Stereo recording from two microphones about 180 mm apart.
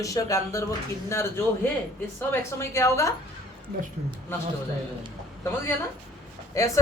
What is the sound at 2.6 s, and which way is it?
Speech, 15° left (ahead or behind).